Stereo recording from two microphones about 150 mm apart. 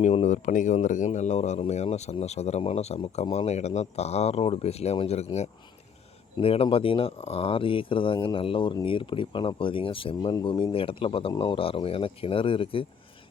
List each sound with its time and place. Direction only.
0.0 s speech: 50° left (ahead or behind)